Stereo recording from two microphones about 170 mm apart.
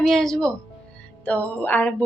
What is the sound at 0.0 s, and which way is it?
Speech, 5° left (ahead or behind).